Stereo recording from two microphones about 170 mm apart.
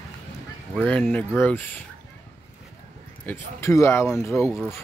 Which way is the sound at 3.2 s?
15° left (ahead or behind).